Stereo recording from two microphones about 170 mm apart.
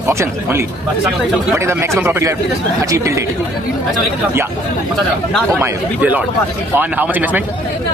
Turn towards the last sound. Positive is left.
turn(degrees=-10)  # may be behind; listen again after turning